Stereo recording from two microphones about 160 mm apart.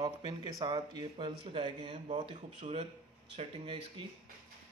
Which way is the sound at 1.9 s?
45° right (ahead or behind).